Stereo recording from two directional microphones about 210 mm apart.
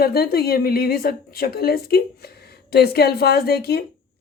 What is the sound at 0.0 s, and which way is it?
A woman's voice, 45° left (ahead or behind).